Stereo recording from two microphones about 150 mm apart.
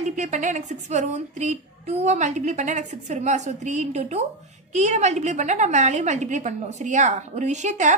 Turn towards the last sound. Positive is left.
turn(degrees=-55)  # may be behind; listen again after turning